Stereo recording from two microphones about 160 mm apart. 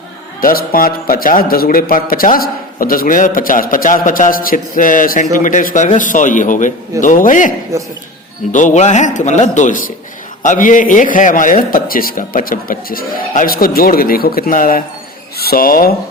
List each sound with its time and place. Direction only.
0.4 s a man's voice: 60° left (ahead or behind)
7.7 s a man's voice: 20° right (ahead or behind)
8.5 s a man's voice: 50° left (ahead or behind); by 16.0 s 65° left (ahead or behind)